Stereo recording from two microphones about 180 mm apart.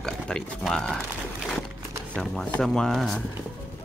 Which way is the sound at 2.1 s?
5° left (ahead or behind).